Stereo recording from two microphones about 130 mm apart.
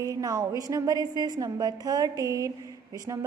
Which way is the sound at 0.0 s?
25° right (ahead or behind).